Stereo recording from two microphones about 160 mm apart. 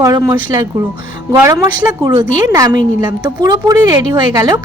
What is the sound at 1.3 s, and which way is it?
A woman's voice, 20° right (ahead or behind).